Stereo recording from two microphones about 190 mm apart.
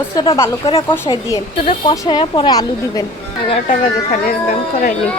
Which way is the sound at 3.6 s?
45° left (ahead or behind).